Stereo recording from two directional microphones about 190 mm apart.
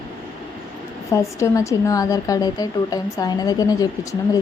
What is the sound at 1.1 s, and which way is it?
A woman's voice, 15° left (ahead or behind).